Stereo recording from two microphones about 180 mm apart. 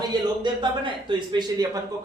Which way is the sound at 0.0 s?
25° right (ahead or behind).